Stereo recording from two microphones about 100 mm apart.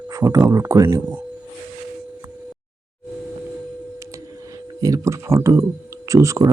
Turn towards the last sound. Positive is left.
turn(degrees=-30)  # may be behind; listen again after turning